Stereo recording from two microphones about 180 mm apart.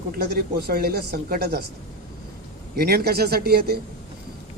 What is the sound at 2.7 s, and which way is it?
Speech, 60° right (ahead or behind).